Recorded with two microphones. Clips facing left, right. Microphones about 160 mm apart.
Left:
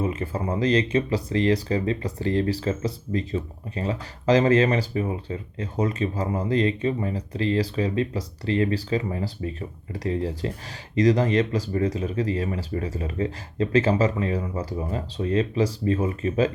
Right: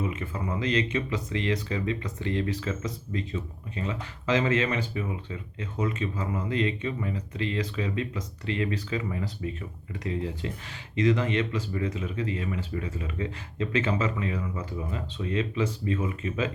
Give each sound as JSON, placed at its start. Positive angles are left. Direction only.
{"t": 0.0, "sound": "speech", "side_deg": 35}